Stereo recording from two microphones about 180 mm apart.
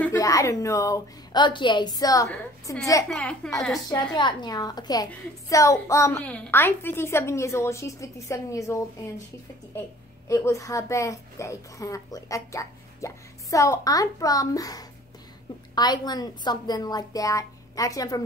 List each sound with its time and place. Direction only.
0.0 s a woman's voice: 15° left (ahead or behind)
3.1 s a woman's voice: 5° left (ahead or behind)
3.9 s a woman's voice: 25° left (ahead or behind)
10.2 s a woman's voice: 15° left (ahead or behind)